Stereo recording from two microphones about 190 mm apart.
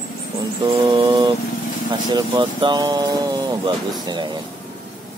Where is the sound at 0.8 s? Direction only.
20° right (ahead or behind).